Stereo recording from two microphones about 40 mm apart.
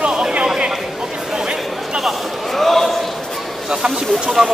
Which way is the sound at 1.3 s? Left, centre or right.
Centre.